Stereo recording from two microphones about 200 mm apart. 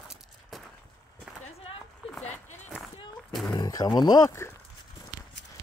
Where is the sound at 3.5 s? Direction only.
20° left (ahead or behind).